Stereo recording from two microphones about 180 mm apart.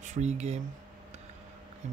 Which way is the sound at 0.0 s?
40° right (ahead or behind).